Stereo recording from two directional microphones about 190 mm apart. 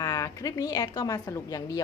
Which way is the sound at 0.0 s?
20° left (ahead or behind).